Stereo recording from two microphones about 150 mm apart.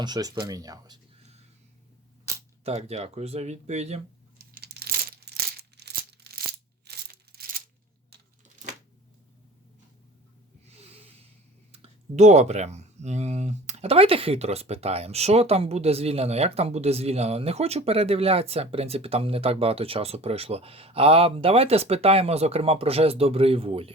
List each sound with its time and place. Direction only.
0.0 s speech: 25° right (ahead or behind)
2.3 s a sound: 20° right (ahead or behind)
2.6 s speech: 45° right (ahead or behind)
4.5 s a sound: 90° right
10.7 s snort: 45° right (ahead or behind)
11.7 s speech: 50° right (ahead or behind)